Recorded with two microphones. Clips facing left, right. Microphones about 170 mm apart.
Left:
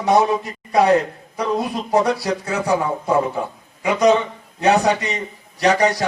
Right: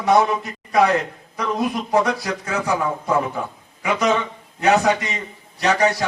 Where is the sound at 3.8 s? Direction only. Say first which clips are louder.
Left 4 dB; 35° left (ahead or behind).